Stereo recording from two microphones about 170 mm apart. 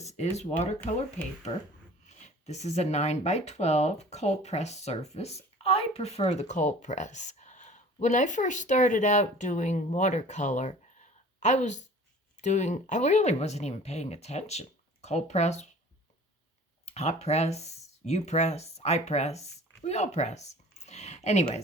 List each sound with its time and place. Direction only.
0.0 s a sound: 40° left (ahead or behind)
0.9 s speech: 40° left (ahead or behind)
2.0 s speech: 45° left (ahead or behind)
16.8 s speech: 40° left (ahead or behind)